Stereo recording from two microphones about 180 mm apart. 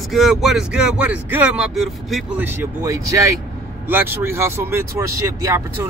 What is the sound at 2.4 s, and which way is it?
Speech, 10° right (ahead or behind).